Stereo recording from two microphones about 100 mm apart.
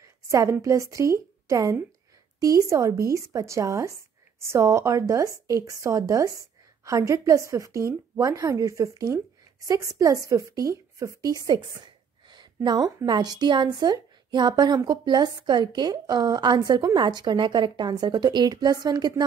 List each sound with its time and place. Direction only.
0.0 s a woman's voice: 30° right (ahead or behind)